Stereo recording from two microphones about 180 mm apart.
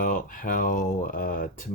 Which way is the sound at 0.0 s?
45° left (ahead or behind).